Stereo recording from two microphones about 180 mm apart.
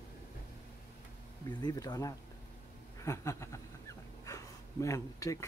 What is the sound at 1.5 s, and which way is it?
Speech, 20° left (ahead or behind).